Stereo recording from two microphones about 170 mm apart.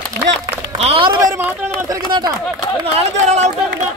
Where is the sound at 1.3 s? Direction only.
15° right (ahead or behind).